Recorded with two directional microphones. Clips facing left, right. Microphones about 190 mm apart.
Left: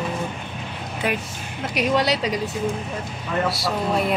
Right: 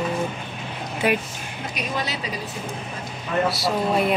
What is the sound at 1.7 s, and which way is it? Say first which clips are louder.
Speech: left 9 dB; 85° left.